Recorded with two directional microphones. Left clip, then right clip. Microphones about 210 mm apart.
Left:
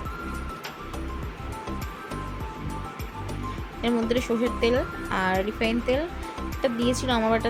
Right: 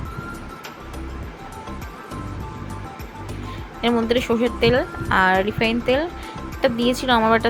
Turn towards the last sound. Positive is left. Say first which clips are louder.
# right 7 dB
turn(degrees=-10)  # may be behind; listen again after turning